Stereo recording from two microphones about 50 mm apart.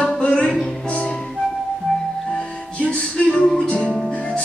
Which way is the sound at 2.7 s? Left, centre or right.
Left.